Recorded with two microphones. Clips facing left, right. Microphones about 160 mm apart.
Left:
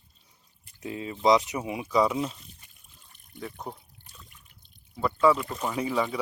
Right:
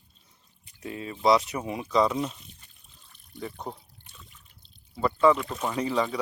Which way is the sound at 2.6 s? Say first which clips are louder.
Even; 10° left (ahead or behind).